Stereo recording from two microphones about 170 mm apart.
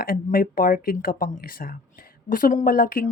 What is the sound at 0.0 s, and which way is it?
Speech, 60° left (ahead or behind).